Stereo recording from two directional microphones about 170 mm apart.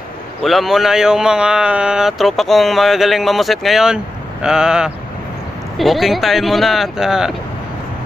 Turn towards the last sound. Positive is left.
turn(degrees=-5)  # may be behind; listen again after turning